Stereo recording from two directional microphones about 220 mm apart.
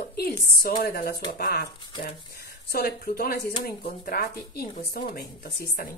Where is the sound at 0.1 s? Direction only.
45° left (ahead or behind).